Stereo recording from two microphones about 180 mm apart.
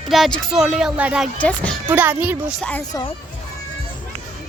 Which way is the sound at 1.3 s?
10° left (ahead or behind).